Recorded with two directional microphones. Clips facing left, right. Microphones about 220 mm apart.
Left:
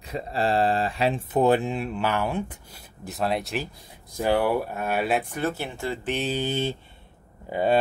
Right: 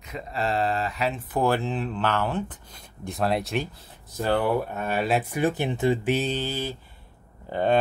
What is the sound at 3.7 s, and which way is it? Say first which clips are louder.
Speech: even; 15° left (ahead or behind).